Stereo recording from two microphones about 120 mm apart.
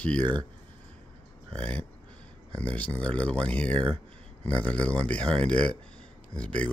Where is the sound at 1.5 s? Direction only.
10° left (ahead or behind).